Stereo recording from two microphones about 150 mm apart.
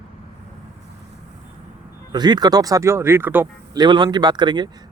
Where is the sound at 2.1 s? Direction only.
30° right (ahead or behind).